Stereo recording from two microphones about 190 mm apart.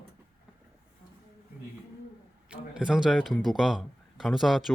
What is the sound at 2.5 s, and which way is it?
Speech, 5° right (ahead or behind).